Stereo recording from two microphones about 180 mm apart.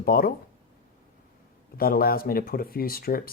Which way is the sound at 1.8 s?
55° left (ahead or behind).